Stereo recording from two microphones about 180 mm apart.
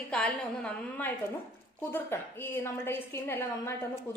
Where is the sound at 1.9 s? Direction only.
10° left (ahead or behind).